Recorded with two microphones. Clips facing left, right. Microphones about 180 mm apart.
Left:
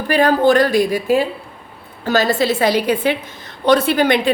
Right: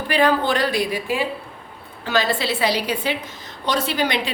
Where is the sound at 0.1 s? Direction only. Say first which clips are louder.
Left 6 dB; 45° left (ahead or behind).